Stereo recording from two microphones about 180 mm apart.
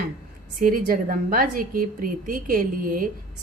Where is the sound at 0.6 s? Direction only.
50° right (ahead or behind).